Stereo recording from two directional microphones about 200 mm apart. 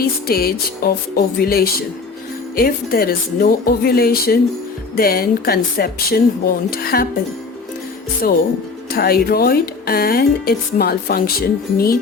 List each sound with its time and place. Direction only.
0.0 s speech: 50° left (ahead or behind)
8.9 s speech: 50° left (ahead or behind)